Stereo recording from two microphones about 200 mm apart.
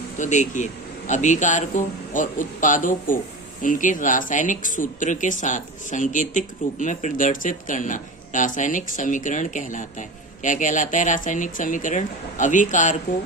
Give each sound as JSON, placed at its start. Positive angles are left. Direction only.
{"t": 0.2, "sound": "speech", "side_deg": 40}